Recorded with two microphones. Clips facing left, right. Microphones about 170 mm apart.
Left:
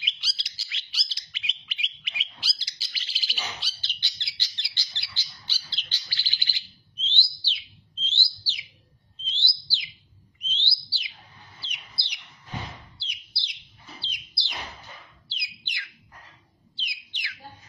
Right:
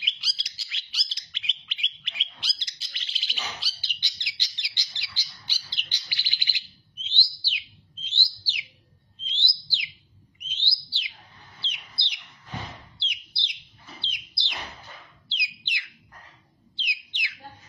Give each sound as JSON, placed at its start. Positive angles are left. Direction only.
{"t": 0.0, "sound": "bird", "side_deg": 0}
{"t": 3.8, "sound": "bird", "side_deg": -15}
{"t": 10.4, "sound": "chirp", "side_deg": -15}
{"t": 14.0, "sound": "chirp", "side_deg": -20}
{"t": 15.2, "sound": "bird", "side_deg": -20}